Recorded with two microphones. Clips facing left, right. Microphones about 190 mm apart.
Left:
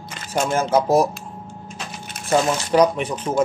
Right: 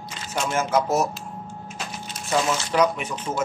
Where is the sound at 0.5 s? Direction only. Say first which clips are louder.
Left 5 dB; 35° left (ahead or behind).